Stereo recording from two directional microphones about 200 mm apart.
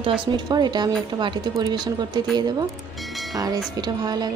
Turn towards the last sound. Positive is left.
turn(degrees=-20)  # may be behind; listen again after turning